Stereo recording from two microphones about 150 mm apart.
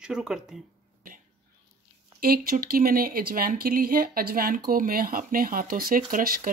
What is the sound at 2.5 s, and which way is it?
Speech, 80° right.